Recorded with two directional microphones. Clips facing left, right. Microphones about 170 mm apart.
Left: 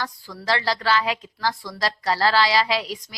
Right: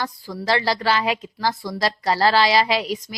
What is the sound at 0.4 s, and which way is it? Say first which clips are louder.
A woman's voice: right 2 dB; 15° right (ahead or behind).